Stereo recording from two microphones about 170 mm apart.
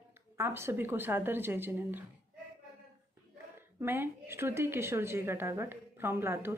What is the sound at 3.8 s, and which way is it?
A woman's voice, 15° right (ahead or behind).